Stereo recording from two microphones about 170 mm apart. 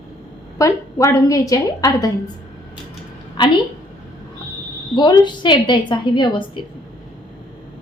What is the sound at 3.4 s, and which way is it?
Speech, 25° left (ahead or behind).